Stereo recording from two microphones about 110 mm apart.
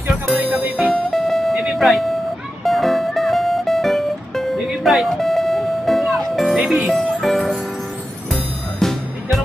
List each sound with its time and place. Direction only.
0.4 s music: 10° right (ahead or behind)
0.7 s music: centre (ahead or behind)
1.6 s a sound: centre (ahead or behind)
2.6 s music: centre (ahead or behind)